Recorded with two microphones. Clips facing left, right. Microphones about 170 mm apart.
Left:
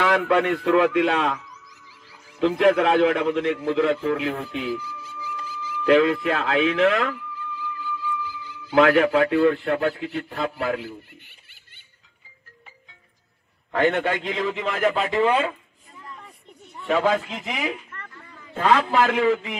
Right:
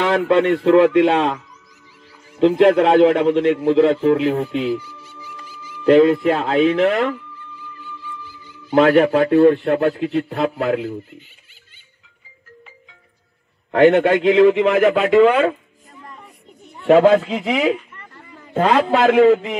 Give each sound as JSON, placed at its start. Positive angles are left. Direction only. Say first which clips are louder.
{"t": 0.0, "sound": "a man's voice", "louder": "right 4 dB", "side_deg": -25}
{"t": 4.6, "sound": "music", "louder": "right 7 dB", "side_deg": -30}
{"t": 5.9, "sound": "a man's voice", "louder": "right 6 dB", "side_deg": -35}
{"t": 7.3, "sound": "music", "louder": "left 5 dB", "side_deg": 90}
{"t": 8.6, "sound": "a man's voice", "louder": "right 4 dB", "side_deg": -35}
{"t": 9.9, "sound": "a man's voice", "louder": "right 8 dB", "side_deg": -60}
{"t": 13.7, "sound": "a man's voice", "louder": "right 9 dB", "side_deg": -60}
{"t": 16.8, "sound": "a man's voice", "louder": "right 10 dB", "side_deg": -70}